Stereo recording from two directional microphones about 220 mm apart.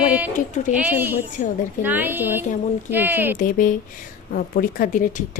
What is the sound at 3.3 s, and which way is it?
A woman's voice, 40° left (ahead or behind).